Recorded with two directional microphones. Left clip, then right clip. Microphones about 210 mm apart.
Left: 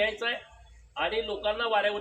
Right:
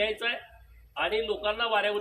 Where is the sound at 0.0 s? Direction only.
10° right (ahead or behind).